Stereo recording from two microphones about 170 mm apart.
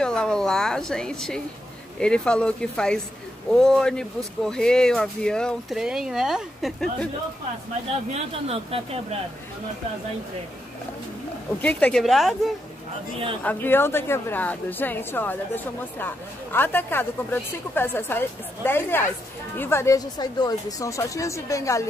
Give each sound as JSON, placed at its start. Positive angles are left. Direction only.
{"t": 0.0, "sound": "a woman's voice", "side_deg": 5}
{"t": 8.1, "sound": "speech", "side_deg": -35}
{"t": 11.6, "sound": "speech", "side_deg": 5}
{"t": 13.4, "sound": "speech", "side_deg": 10}